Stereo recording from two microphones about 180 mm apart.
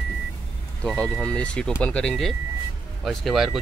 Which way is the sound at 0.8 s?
5° left (ahead or behind).